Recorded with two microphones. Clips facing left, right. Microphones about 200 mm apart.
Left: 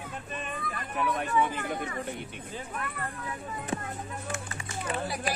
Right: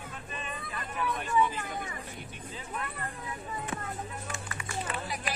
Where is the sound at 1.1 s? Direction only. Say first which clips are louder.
Even; 60° left (ahead or behind).